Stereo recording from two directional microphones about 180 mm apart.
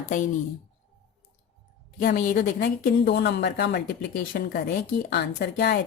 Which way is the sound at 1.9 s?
50° left (ahead or behind).